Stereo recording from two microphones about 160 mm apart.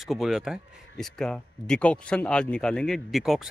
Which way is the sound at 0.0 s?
Centre (ahead or behind).